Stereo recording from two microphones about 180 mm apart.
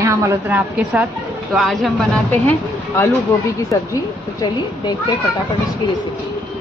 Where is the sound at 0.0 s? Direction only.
15° right (ahead or behind); by 2.0 s centre (ahead or behind).